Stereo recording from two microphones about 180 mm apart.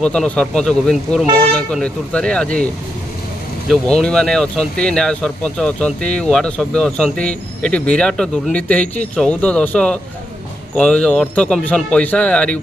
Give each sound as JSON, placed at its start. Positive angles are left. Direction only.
{"t": 0.0, "sound": "speech", "side_deg": 5}